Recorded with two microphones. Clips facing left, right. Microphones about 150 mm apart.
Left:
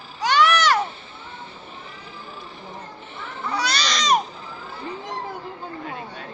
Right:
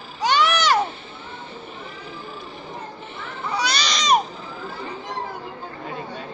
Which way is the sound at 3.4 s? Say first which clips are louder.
Even; 15° right (ahead or behind).